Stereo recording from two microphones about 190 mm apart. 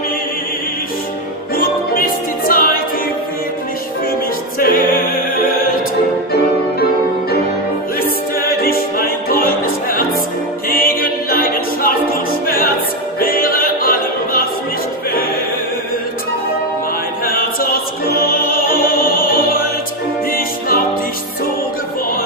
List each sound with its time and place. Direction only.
1.5 s music: 50° left (ahead or behind)
4.6 s music: 50° left (ahead or behind)
8.0 s music: 50° left (ahead or behind)
17.2 s opera: 50° left (ahead or behind)
20.2 s music: 50° left (ahead or behind)